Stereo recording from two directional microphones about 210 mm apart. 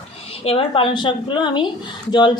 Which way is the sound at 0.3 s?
25° left (ahead or behind).